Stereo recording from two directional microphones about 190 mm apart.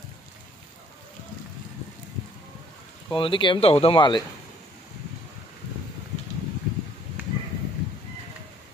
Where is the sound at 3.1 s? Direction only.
25° left (ahead or behind).